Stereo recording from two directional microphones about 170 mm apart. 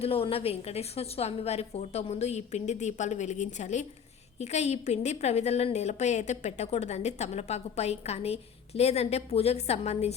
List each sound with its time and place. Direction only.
0.0 s a woman's voice: 35° left (ahead or behind)